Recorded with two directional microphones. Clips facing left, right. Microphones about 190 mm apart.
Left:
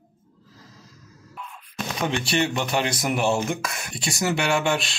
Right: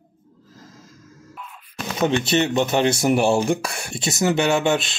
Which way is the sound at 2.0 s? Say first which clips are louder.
Right 5 dB; 20° right (ahead or behind).